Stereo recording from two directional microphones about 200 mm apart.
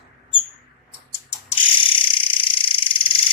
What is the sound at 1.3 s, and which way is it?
Ratchet, 30° left (ahead or behind).